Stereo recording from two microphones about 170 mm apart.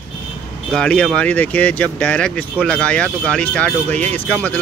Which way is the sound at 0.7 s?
5° left (ahead or behind).